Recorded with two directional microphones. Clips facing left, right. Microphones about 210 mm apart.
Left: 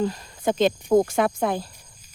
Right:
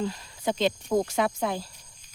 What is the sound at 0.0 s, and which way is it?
Speech, 50° left (ahead or behind).